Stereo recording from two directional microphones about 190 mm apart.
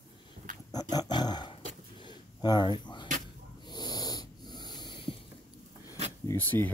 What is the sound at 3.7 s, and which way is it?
Wheeze, 20° left (ahead or behind).